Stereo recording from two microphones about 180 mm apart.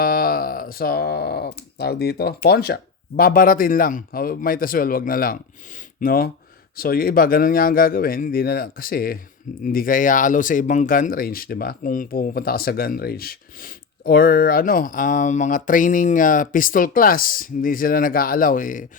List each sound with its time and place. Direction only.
0.0 s speech: 55° left (ahead or behind)